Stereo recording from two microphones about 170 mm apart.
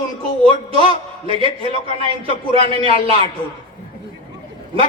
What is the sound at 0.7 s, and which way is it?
A man's voice, 30° right (ahead or behind).